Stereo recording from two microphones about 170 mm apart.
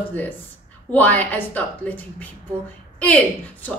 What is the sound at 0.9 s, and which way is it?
Speech, 10° left (ahead or behind).